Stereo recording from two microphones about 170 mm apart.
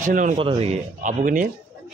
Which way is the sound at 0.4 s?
35° right (ahead or behind).